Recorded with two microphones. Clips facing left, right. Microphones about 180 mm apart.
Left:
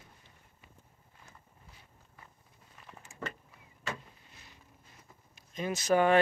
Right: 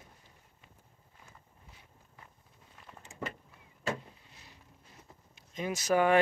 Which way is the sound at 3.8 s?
30° right (ahead or behind).